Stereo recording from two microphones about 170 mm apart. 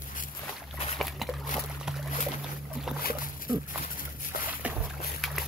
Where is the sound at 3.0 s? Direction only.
55° left (ahead or behind).